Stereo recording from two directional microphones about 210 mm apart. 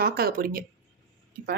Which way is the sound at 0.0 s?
45° right (ahead or behind).